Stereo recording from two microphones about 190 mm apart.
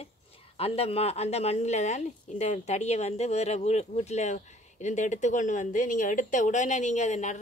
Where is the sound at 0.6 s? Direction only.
30° left (ahead or behind).